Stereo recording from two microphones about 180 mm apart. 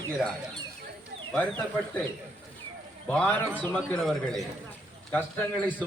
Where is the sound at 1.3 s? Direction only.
5° left (ahead or behind).